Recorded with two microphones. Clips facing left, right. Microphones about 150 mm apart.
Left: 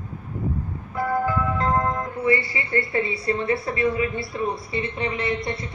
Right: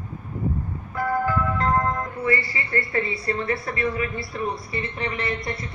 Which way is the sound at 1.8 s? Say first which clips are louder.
Left 2 dB; 20° left (ahead or behind).